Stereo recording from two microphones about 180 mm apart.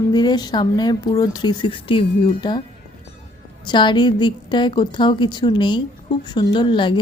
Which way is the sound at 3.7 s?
25° left (ahead or behind).